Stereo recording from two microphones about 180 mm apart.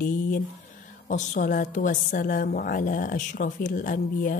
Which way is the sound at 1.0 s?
45° left (ahead or behind).